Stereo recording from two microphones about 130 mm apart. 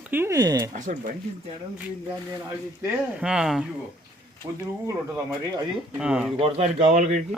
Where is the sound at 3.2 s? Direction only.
5° right (ahead or behind).